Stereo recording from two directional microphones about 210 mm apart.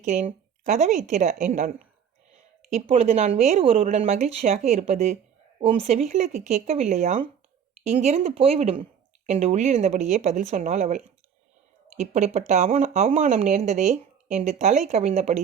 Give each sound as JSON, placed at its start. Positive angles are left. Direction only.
{"t": 0.0, "sound": "speech", "side_deg": -35}